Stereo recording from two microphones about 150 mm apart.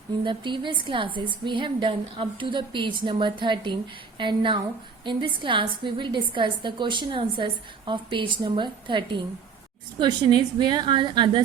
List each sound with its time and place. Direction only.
0.3 s a woman's voice: 30° right (ahead or behind)